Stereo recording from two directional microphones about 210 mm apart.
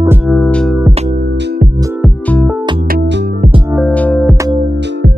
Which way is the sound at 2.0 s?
5° left (ahead or behind).